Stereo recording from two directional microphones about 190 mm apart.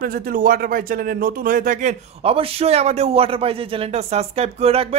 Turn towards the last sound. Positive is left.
turn(degrees=-30)  # may be behind; listen again after turning